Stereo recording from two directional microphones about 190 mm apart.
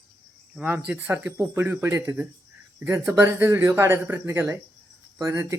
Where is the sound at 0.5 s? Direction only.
10° right (ahead or behind).